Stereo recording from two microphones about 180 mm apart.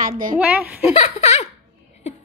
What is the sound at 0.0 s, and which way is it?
Speech, 50° right (ahead or behind).